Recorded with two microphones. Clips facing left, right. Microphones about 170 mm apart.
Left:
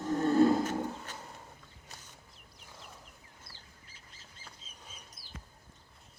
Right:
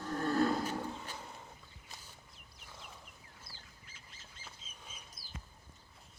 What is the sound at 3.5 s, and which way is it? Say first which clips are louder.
Bird: even; 25° right (ahead or behind).